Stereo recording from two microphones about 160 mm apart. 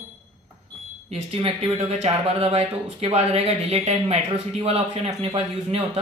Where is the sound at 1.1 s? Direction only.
40° right (ahead or behind).